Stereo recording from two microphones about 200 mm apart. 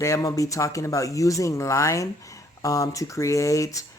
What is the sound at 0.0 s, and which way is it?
Speech, 15° left (ahead or behind).